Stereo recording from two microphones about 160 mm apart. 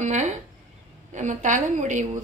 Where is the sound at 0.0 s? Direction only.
50° right (ahead or behind).